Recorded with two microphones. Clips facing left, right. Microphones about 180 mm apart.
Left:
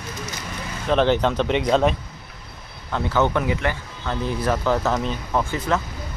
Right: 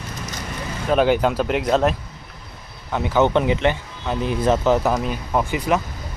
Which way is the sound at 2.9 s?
15° right (ahead or behind).